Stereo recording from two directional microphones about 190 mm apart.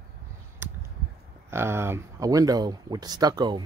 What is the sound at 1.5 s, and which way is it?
Speech, 15° right (ahead or behind).